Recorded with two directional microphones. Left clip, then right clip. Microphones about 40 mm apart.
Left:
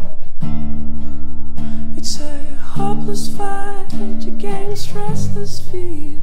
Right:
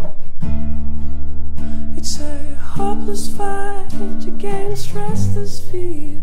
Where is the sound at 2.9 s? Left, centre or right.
Centre.